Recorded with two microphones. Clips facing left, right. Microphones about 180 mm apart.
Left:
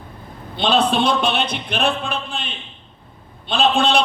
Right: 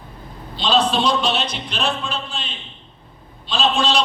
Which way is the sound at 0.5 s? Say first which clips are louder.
Left 1 dB; 55° left (ahead or behind).